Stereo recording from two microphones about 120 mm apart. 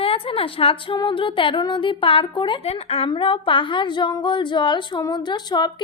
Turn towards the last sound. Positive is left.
turn(degrees=35)  # may be behind; listen again after turning